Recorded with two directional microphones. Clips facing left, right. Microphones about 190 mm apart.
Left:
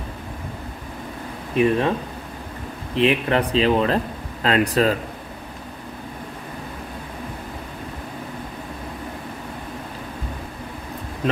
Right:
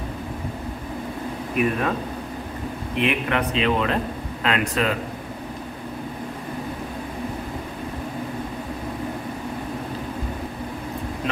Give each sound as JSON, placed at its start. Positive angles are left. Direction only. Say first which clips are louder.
{"t": 1.5, "sound": "speech", "louder": "left 4 dB", "side_deg": 30}
{"t": 3.0, "sound": "speech", "louder": "left 4 dB", "side_deg": 35}